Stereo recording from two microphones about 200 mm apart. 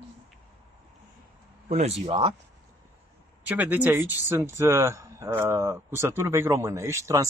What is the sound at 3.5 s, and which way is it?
Speech, 10° right (ahead or behind).